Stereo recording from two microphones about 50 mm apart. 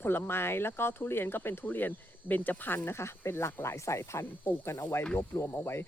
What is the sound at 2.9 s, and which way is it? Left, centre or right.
Speech, left.